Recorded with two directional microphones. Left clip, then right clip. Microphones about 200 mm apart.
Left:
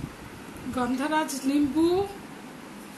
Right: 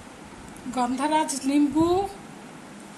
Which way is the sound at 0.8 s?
50° right (ahead or behind).